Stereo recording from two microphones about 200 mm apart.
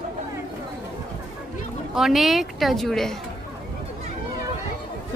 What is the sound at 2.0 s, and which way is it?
Speech, centre (ahead or behind).